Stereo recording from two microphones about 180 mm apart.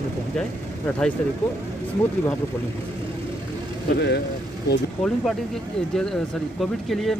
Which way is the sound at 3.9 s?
70° left (ahead or behind).